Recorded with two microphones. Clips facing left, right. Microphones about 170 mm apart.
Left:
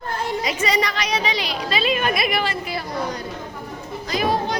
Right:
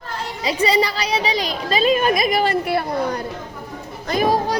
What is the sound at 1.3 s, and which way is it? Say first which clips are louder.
A child's voice: right 3 dB; 40° right (ahead or behind).